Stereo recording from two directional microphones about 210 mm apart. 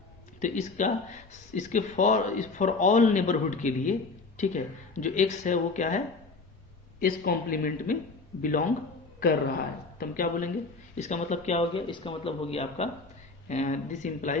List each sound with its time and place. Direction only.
0.3 s speech: 35° left (ahead or behind)
7.0 s speech: 45° left (ahead or behind)
10.0 s speech: 40° left (ahead or behind)